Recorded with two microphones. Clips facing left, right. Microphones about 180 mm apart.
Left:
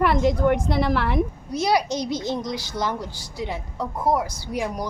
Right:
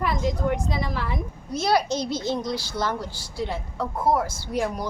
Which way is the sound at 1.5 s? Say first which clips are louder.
Left 1 dB; 15° left (ahead or behind).